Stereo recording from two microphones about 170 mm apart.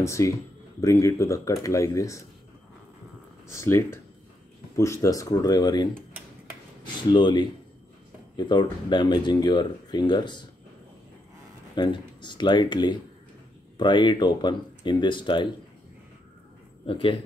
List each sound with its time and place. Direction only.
0.0 s speech: 15° left (ahead or behind)
3.4 s speech: 15° left (ahead or behind)
7.0 s speech: 25° left (ahead or behind)
11.7 s speech: 25° left (ahead or behind)
16.8 s speech: 30° left (ahead or behind)